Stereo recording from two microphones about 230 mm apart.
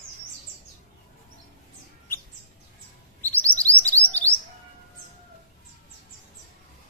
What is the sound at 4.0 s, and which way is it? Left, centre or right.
Chirp, right.